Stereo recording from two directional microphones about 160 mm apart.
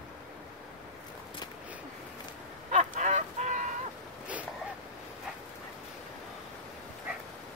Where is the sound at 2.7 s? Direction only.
50° right (ahead or behind).